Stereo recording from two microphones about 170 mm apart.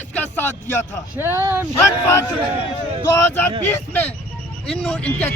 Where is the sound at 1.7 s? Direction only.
15° left (ahead or behind).